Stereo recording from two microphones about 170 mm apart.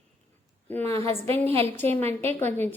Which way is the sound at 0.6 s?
10° left (ahead or behind).